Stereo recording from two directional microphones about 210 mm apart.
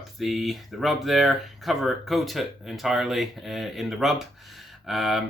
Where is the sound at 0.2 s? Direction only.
Centre (ahead or behind).